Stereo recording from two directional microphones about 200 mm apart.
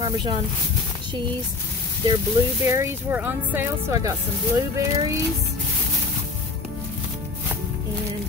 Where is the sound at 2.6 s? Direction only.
15° right (ahead or behind).